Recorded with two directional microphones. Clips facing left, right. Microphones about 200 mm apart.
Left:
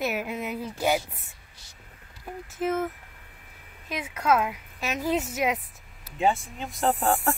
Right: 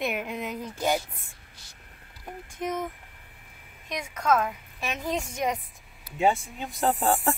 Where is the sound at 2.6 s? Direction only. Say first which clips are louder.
Left 4 dB; 5° left (ahead or behind).